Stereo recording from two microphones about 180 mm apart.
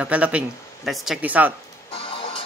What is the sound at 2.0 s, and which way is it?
Music, 30° left (ahead or behind).